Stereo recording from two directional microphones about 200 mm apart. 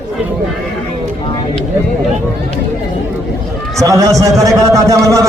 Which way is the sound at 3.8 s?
15° right (ahead or behind).